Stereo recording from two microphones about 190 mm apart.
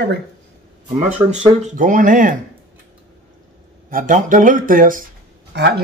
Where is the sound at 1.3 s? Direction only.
40° right (ahead or behind).